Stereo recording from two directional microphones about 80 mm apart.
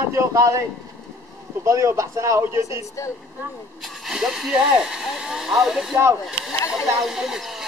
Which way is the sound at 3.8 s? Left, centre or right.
Centre.